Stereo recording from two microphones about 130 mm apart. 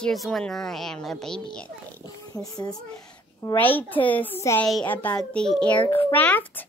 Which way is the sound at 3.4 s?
15° left (ahead or behind).